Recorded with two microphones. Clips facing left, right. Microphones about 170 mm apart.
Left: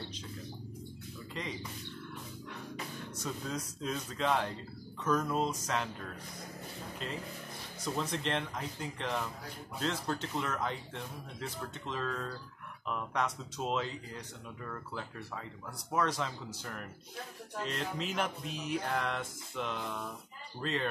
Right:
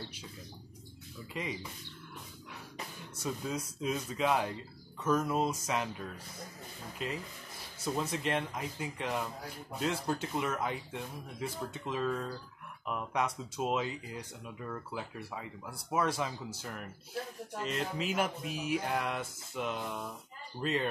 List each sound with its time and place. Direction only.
1.3 s speech: 5° right (ahead or behind)
3.2 s speech: 10° right (ahead or behind)